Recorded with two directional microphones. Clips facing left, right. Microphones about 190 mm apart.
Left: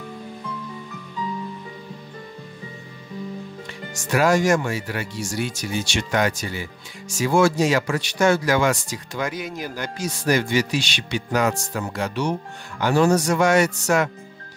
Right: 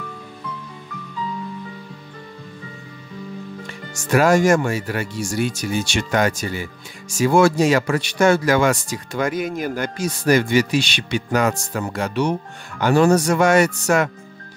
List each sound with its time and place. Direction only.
4.1 s speech: 50° right (ahead or behind)